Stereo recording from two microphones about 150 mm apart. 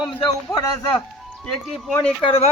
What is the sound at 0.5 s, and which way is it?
Speech, 25° left (ahead or behind).